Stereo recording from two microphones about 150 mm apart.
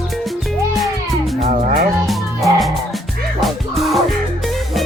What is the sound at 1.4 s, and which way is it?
Music, 55° right (ahead or behind).